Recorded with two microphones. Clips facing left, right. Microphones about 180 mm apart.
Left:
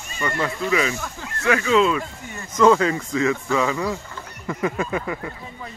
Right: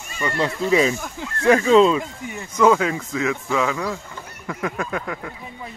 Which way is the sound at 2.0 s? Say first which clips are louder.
Right 3 dB; 10° right (ahead or behind).